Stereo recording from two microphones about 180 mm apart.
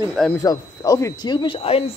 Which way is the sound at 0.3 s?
15° left (ahead or behind).